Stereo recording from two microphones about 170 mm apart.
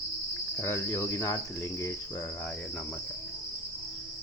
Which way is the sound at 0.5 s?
10° left (ahead or behind).